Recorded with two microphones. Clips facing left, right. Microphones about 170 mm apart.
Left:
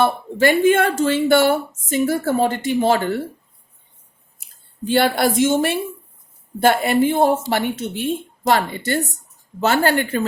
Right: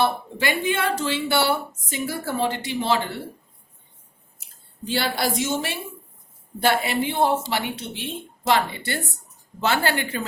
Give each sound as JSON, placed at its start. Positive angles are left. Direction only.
{"t": 0.0, "sound": "speech", "side_deg": 50}
{"t": 4.9, "sound": "speech", "side_deg": 55}